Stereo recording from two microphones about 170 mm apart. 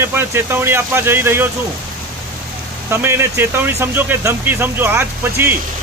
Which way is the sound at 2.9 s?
15° right (ahead or behind).